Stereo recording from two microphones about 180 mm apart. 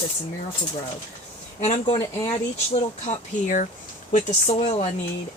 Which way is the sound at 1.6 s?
40° left (ahead or behind).